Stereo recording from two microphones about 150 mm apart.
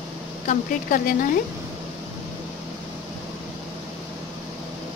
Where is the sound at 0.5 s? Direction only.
65° left (ahead or behind).